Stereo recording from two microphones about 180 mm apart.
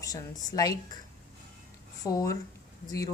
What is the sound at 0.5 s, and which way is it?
Speech, 20° left (ahead or behind).